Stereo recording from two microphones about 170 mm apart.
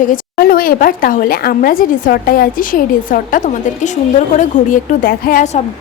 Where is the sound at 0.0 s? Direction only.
55° left (ahead or behind).